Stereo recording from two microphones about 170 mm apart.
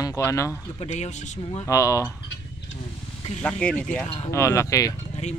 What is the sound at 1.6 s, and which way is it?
Speech, 20° left (ahead or behind).